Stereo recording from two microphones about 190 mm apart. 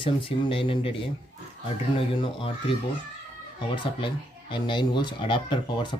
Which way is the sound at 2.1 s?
25° left (ahead or behind).